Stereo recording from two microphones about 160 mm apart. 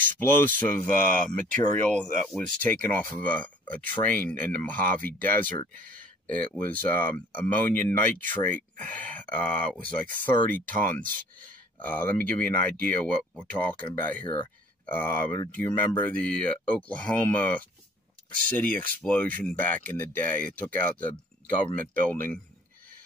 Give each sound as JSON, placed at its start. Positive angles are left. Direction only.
{"t": 0.0, "sound": "speech", "side_deg": 10}
{"t": 5.8, "sound": "a sound", "side_deg": -55}
{"t": 6.3, "sound": "speech", "side_deg": 10}
{"t": 13.2, "sound": "speech", "side_deg": -5}
{"t": 13.5, "sound": "speech", "side_deg": 10}
{"t": 14.2, "sound": "speech", "side_deg": 30}
{"t": 14.9, "sound": "speech", "side_deg": 10}